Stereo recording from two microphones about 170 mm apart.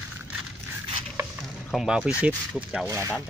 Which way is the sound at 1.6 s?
Centre (ahead or behind).